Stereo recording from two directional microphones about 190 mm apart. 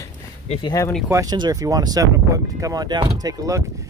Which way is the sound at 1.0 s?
15° right (ahead or behind).